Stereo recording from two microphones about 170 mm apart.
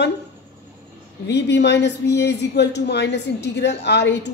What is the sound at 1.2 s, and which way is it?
A man's voice, 90° left.